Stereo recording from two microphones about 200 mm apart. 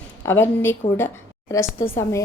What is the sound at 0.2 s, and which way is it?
A woman's voice, 10° left (ahead or behind).